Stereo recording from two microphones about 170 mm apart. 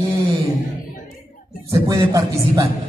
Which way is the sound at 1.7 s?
20° right (ahead or behind).